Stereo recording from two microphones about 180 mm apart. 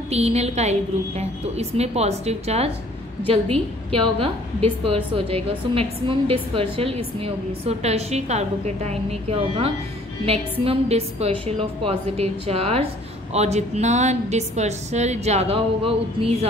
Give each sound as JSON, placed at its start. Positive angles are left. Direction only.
{"t": 0.1, "sound": "a woman's voice", "side_deg": -35}
{"t": 3.9, "sound": "a woman's voice", "side_deg": -30}